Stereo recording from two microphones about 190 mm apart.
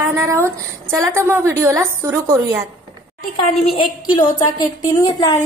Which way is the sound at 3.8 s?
25° left (ahead or behind).